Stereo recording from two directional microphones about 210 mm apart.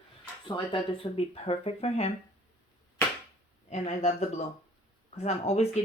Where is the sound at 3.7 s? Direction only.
30° left (ahead or behind).